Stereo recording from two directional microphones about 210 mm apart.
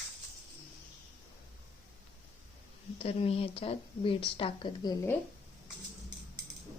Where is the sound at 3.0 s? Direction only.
25° left (ahead or behind).